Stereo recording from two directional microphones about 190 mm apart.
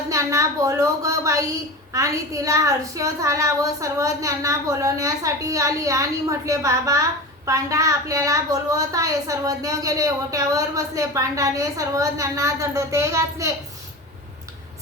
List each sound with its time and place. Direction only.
0.1 s a woman's voice: 15° right (ahead or behind)